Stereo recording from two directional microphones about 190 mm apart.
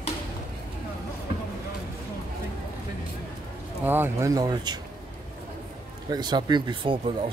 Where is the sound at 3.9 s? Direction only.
15° right (ahead or behind).